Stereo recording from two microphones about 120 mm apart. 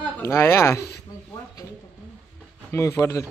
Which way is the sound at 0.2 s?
20° left (ahead or behind).